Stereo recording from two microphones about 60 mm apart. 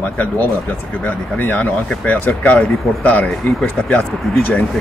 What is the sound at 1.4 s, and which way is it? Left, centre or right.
Speech, left.